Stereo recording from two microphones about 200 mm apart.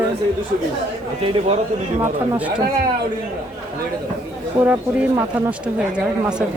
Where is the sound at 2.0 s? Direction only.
5° right (ahead or behind).